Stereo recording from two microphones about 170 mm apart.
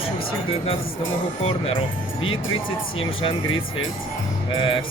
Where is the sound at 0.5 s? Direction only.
35° left (ahead or behind).